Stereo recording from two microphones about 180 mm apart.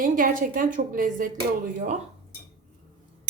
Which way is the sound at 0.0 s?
50° right (ahead or behind).